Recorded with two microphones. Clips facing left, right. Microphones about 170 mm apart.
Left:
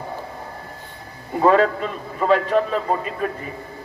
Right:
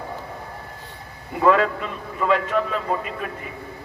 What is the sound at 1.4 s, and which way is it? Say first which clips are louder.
A man's voice: left 2 dB; 35° left (ahead or behind).